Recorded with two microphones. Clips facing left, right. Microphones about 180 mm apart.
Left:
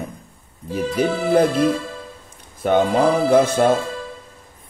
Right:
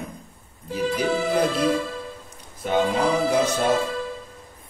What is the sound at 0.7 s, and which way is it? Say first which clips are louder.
Music: left 3 dB; 50° left (ahead or behind).